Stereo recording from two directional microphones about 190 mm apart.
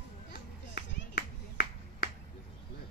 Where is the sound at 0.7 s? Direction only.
60° left (ahead or behind).